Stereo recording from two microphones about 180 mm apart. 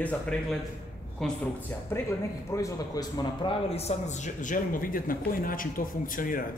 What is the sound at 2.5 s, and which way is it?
A man's voice, 20° left (ahead or behind).